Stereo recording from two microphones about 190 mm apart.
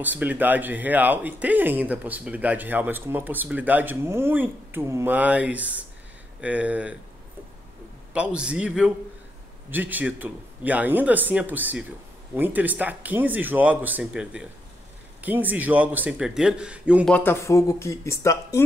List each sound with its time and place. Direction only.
0.0 s speech: 10° right (ahead or behind)
8.1 s a man's voice: 5° right (ahead or behind)
17.1 s speech: 10° left (ahead or behind)